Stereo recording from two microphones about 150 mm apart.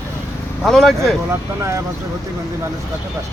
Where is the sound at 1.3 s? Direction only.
20° right (ahead or behind).